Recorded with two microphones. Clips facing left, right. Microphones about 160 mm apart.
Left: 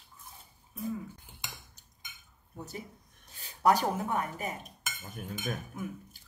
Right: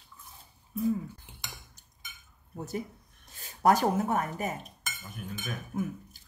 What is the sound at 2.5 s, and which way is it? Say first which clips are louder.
Speech: right 7 dB; 45° right (ahead or behind).